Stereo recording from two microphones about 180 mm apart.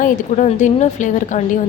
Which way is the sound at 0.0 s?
45° left (ahead or behind).